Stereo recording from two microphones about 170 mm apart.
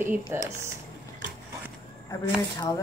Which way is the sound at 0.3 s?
15° right (ahead or behind).